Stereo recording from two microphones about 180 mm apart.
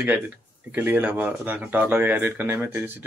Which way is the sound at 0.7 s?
10° right (ahead or behind).